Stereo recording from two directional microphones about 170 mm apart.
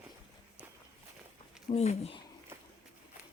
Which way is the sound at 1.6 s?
40° left (ahead or behind).